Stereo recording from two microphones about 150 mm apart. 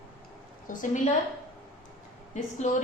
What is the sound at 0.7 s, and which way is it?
Speech, 60° left (ahead or behind).